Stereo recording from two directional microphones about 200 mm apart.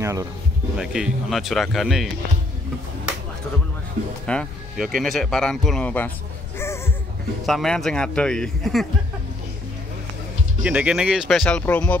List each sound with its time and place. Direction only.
0.0 s speech: 15° right (ahead or behind)
0.7 s speech: 5° right (ahead or behind)
4.3 s speech: centre (ahead or behind)
7.4 s speech: centre (ahead or behind)
10.6 s speech: 5° right (ahead or behind)